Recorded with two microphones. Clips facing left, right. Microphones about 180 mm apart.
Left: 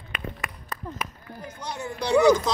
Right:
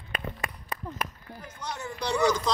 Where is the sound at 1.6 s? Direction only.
10° left (ahead or behind).